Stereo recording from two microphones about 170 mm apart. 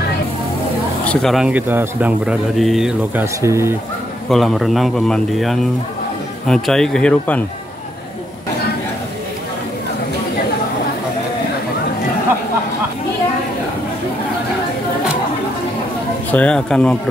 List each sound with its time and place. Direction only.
1.0 s a man's voice: 5° left (ahead or behind)
3.3 s speech: 15° right (ahead or behind)
4.3 s a man's voice: centre (ahead or behind)
16.3 s a man's voice: 5° left (ahead or behind)